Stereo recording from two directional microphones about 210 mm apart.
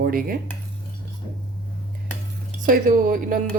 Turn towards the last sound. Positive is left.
turn(degrees=-40)  # may be behind; listen again after turning